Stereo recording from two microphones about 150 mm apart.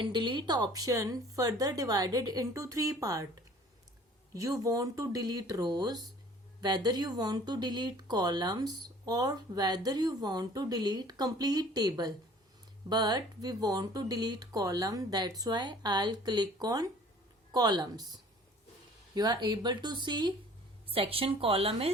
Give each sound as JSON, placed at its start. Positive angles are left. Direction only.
{"t": 0.0, "sound": "speech", "side_deg": -30}
{"t": 4.4, "sound": "speech", "side_deg": -20}
{"t": 19.1, "sound": "a woman's voice", "side_deg": -30}